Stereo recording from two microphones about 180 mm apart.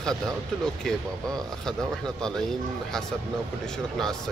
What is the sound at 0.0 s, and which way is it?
Speech, 5° left (ahead or behind).